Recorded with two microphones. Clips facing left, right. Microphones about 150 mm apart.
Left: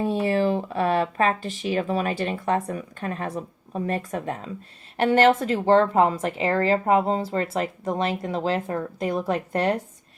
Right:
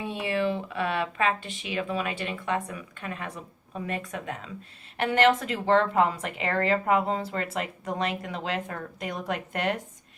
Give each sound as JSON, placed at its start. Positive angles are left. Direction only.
{"t": 0.0, "sound": "a woman's voice", "side_deg": 40}